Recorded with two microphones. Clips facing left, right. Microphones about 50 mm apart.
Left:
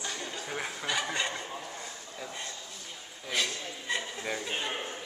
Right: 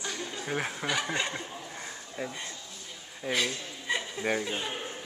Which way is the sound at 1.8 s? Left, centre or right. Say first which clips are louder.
Right 4 dB; right.